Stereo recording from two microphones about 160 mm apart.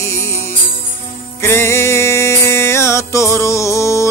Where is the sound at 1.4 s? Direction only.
15° left (ahead or behind).